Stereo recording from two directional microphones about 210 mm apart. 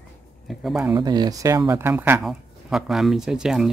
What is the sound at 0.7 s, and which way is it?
Speech, 15° right (ahead or behind).